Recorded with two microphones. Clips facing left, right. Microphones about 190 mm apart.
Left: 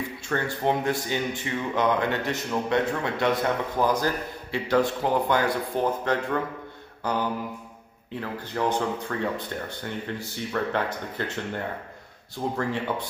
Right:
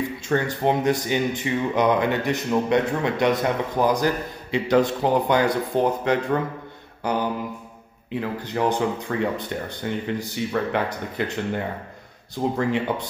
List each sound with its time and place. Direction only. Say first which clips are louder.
0.3 s speech: right 4 dB; 20° right (ahead or behind)
7.0 s mantra: right 3 dB; 15° right (ahead or behind)
8.2 s speech: right 4 dB; 15° right (ahead or behind)